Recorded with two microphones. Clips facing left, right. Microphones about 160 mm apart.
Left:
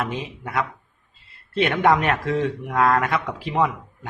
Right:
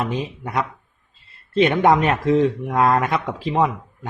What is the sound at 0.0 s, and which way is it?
Speech, 20° right (ahead or behind).